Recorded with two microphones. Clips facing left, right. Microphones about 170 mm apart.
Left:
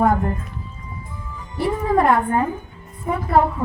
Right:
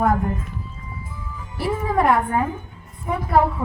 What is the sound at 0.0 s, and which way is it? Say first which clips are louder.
Speech: left 2 dB; centre (ahead or behind).